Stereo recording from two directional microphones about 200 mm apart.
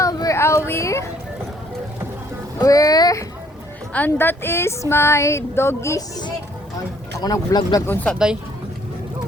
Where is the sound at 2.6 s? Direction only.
15° left (ahead or behind).